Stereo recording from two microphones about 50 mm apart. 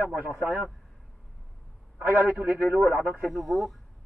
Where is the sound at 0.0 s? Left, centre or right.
Right.